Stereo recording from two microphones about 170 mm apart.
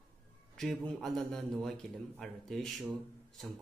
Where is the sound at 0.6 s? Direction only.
Centre (ahead or behind).